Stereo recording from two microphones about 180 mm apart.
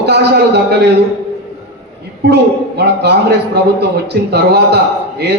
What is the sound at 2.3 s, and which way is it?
A man's voice, 65° right (ahead or behind).